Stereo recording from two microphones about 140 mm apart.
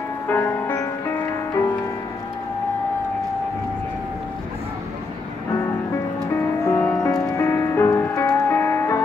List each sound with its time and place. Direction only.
0.3 s music: 15° left (ahead or behind)
6.3 s music: 20° left (ahead or behind)